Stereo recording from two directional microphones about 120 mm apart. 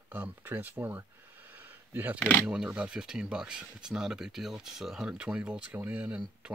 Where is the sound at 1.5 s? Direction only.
15° right (ahead or behind).